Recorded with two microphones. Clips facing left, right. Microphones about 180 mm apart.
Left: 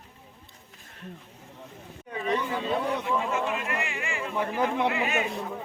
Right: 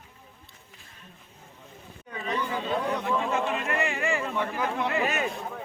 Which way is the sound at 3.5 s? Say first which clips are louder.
Right 3 dB; 35° right (ahead or behind).